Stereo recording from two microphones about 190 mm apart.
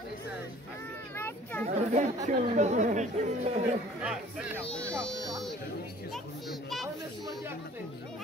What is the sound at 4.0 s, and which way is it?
Speech, 5° right (ahead or behind).